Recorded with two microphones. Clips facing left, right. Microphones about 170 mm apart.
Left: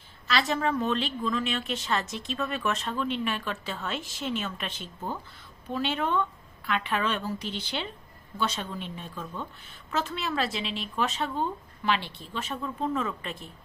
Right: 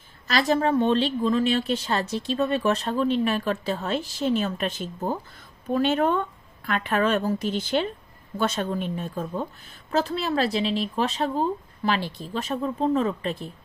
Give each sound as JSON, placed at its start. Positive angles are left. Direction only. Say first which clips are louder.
{"t": 0.3, "sound": "a woman's voice", "louder": "right 5 dB", "side_deg": -40}